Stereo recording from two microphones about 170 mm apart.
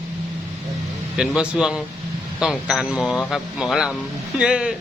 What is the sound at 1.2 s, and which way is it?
Speech, 5° right (ahead or behind).